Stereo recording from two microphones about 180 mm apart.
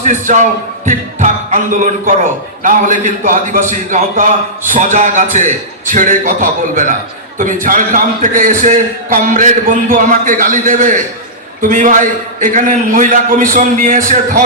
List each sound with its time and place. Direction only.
0.0 s a man's voice: 45° right (ahead or behind)